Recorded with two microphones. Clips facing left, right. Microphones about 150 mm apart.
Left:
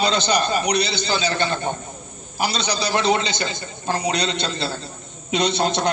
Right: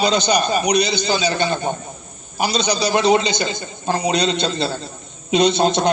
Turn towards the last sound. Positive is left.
turn(degrees=-20)  # may be behind; listen again after turning